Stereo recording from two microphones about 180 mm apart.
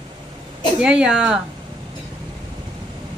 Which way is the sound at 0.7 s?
5° right (ahead or behind).